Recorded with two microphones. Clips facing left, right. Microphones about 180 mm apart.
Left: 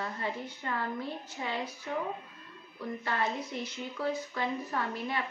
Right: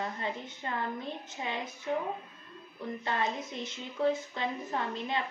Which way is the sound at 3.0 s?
20° right (ahead or behind).